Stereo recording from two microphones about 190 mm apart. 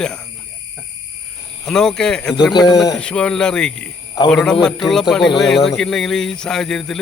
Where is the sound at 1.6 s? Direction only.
5° left (ahead or behind).